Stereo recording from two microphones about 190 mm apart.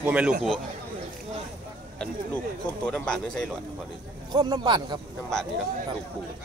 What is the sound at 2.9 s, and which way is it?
Speech, 5° left (ahead or behind).